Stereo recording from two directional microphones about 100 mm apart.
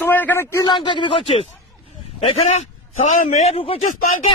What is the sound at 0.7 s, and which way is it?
Speech, 55° left (ahead or behind).